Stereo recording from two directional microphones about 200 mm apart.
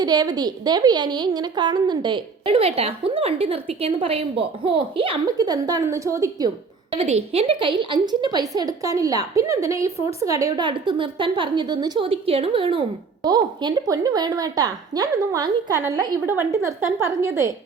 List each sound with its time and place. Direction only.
0.0 s speech: 20° right (ahead or behind)
6.9 s a woman's voice: 30° right (ahead or behind); by 17.5 s 15° right (ahead or behind)